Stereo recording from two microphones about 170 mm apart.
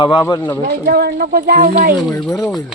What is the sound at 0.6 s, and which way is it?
Speech, 65° right (ahead or behind).